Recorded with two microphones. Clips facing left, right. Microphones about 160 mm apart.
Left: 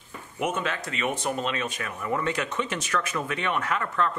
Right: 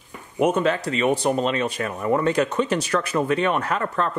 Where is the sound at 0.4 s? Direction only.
35° right (ahead or behind).